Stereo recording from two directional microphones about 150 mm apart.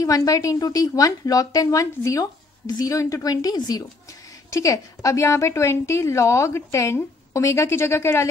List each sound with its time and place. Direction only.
0.0 s a woman's voice: 20° left (ahead or behind)